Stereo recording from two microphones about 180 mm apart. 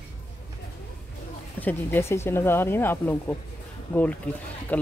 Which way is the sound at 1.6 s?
10° left (ahead or behind).